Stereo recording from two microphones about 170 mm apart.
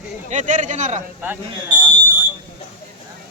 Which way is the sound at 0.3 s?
45° right (ahead or behind).